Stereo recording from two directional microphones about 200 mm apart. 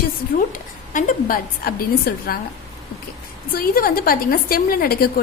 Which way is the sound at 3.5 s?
45° left (ahead or behind).